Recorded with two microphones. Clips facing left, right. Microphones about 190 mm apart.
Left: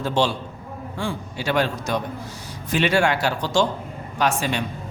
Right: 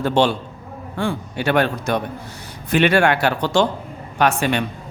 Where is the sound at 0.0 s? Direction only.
60° right (ahead or behind).